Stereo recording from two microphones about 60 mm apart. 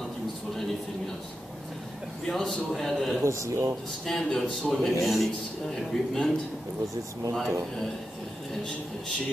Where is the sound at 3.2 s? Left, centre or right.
Right.